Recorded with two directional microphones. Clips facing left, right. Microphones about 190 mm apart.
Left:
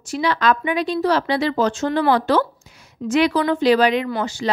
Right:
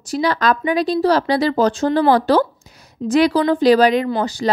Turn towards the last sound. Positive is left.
turn(degrees=-35)  # may be behind; listen again after turning